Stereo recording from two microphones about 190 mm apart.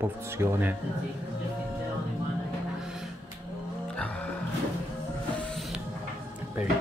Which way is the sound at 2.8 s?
Centre (ahead or behind).